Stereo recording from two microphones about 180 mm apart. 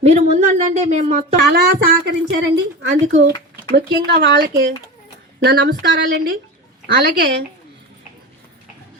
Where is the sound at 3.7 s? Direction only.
60° right (ahead or behind).